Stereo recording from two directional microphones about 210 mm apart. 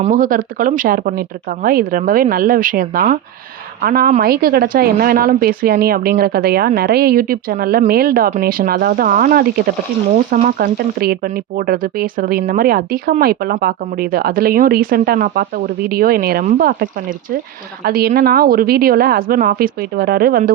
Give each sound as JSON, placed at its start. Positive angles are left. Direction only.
{"t": 0.0, "sound": "speech", "side_deg": -40}